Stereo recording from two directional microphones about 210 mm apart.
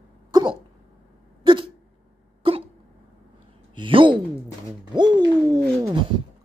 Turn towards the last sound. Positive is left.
turn(degrees=-20)  # may be behind; listen again after turning